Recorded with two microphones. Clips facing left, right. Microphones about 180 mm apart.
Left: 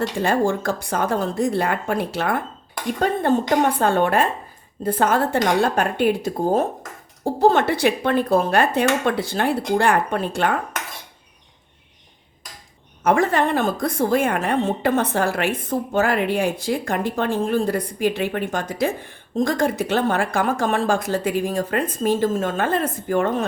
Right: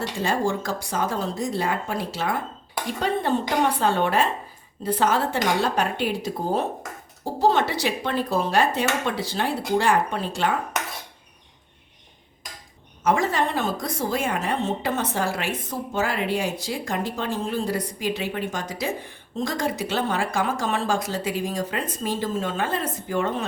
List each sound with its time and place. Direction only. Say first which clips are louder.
0.2 s a woman's voice: left 3 dB; 55° left (ahead or behind)
13.0 s a woman's voice: left 4 dB; 60° left (ahead or behind)